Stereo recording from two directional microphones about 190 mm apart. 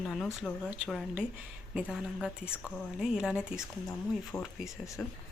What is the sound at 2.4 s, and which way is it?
Speech, 10° left (ahead or behind).